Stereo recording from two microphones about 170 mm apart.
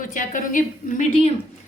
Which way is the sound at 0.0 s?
50° left (ahead or behind).